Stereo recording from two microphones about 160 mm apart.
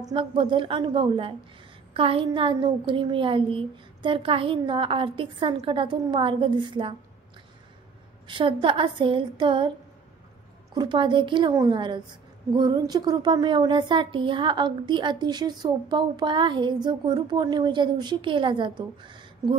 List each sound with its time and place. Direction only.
0.0 s a woman's voice: 30° right (ahead or behind)
8.3 s a woman's voice: 30° right (ahead or behind)
10.7 s a woman's voice: 30° right (ahead or behind)